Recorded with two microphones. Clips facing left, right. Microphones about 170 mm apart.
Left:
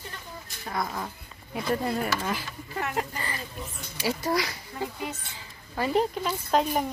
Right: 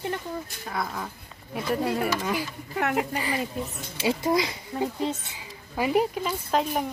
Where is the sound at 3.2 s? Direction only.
15° right (ahead or behind).